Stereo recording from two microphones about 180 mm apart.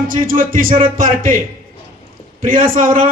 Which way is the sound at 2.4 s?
50° right (ahead or behind).